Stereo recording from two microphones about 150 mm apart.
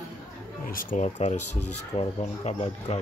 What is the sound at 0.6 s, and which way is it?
Speech, 60° left (ahead or behind).